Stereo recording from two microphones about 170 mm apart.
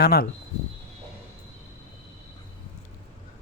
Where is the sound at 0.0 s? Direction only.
65° left (ahead or behind).